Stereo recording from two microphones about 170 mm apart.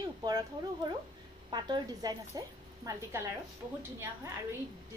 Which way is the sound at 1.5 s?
25° right (ahead or behind).